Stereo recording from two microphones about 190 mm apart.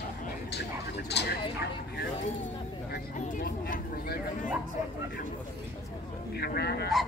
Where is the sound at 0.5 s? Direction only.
60° left (ahead or behind).